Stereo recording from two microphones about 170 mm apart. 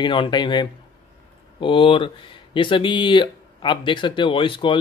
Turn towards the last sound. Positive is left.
turn(degrees=30)  # may be behind; listen again after turning